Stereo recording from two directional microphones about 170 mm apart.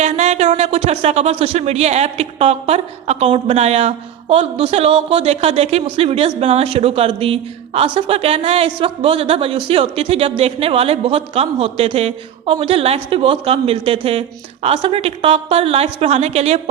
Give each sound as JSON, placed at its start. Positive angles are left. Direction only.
{"t": 0.0, "sound": "speech", "side_deg": -40}